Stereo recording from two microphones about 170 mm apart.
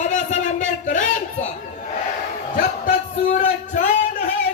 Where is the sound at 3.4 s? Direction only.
40° left (ahead or behind).